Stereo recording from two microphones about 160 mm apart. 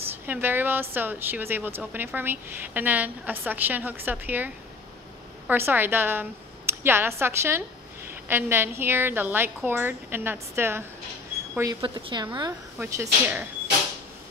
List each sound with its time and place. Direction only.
0.3 s speech: 10° right (ahead or behind)
5.5 s a woman's voice: 10° right (ahead or behind)